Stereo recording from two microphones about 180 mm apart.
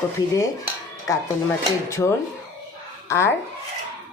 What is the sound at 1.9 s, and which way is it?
Speech, 15° left (ahead or behind).